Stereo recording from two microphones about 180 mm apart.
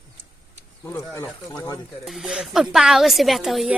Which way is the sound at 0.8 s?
15° left (ahead or behind).